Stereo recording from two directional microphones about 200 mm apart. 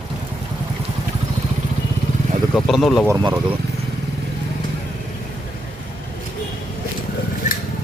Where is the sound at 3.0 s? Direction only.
20° right (ahead or behind).